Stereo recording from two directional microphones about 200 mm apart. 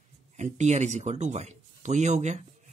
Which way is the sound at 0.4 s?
35° right (ahead or behind).